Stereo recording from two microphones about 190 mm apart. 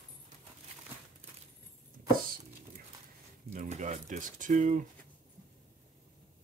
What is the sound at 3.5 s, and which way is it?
Speech, 40° right (ahead or behind).